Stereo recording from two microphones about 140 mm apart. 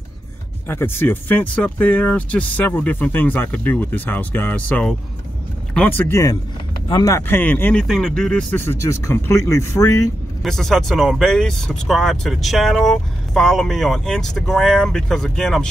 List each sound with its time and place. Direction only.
0.7 s speech: 15° left (ahead or behind)
7.8 s speech: centre (ahead or behind); by 10.0 s 25° left (ahead or behind)
10.4 s speech: 5° left (ahead or behind)